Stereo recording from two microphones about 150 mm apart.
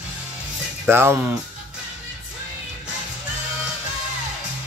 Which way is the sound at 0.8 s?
15° right (ahead or behind).